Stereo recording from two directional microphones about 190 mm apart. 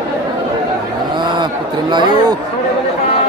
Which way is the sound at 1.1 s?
25° right (ahead or behind).